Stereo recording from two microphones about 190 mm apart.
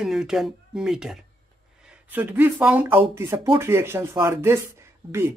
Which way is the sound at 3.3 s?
30° right (ahead or behind).